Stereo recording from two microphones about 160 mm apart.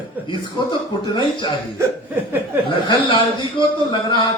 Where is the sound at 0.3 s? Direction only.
30° left (ahead or behind).